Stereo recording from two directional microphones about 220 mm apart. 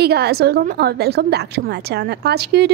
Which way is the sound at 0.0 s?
45° right (ahead or behind).